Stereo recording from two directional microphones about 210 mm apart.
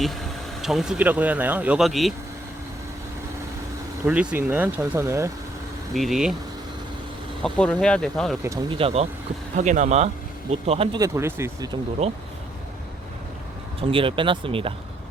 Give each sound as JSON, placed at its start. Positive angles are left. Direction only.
{"t": 0.6, "sound": "speech", "side_deg": 0}
{"t": 4.0, "sound": "speech", "side_deg": -5}
{"t": 5.9, "sound": "speech", "side_deg": 0}
{"t": 7.4, "sound": "speech", "side_deg": 5}
{"t": 8.4, "sound": "speech", "side_deg": -25}
{"t": 11.0, "sound": "speech", "side_deg": -15}
{"t": 12.0, "sound": "speech", "side_deg": -30}
{"t": 13.8, "sound": "speech", "side_deg": -25}